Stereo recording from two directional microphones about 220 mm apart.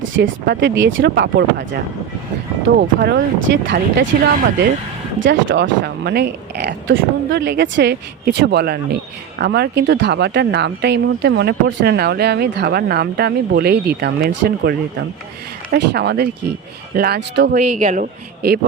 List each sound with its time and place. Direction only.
0.1 s speech: 50° right (ahead or behind)
2.8 s speech: 45° right (ahead or behind)
5.2 s speech: 55° right (ahead or behind)
17.5 s a man's voice: 35° right (ahead or behind)